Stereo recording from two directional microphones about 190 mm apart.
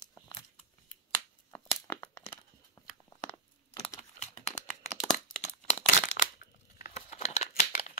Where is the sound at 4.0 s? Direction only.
35° left (ahead or behind).